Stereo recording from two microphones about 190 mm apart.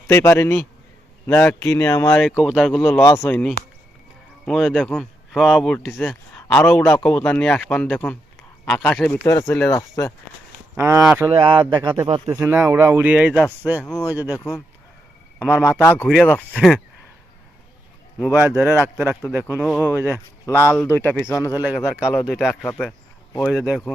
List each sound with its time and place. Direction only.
0.1 s speech: 15° left (ahead or behind)
2.2 s speech: 5° right (ahead or behind); by 10.1 s 15° left (ahead or behind)
10.8 s a man's voice: 10° right (ahead or behind)
11.3 s speech: 25° right (ahead or behind)
12.3 s a man's voice: 10° right (ahead or behind)
13.8 s speech: 10° left (ahead or behind)
15.7 s speech: 10° left (ahead or behind)
18.3 s a man's voice: 10° right (ahead or behind)
20.8 s speech: 10° left (ahead or behind)
21.4 s speech: 10° right (ahead or behind)